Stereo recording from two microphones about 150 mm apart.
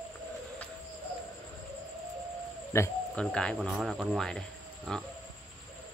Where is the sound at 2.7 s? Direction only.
15° left (ahead or behind).